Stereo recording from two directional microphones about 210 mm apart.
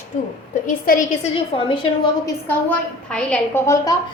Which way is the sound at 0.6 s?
40° left (ahead or behind).